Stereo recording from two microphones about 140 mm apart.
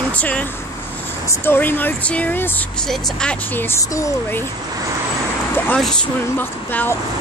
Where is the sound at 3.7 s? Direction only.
20° left (ahead or behind).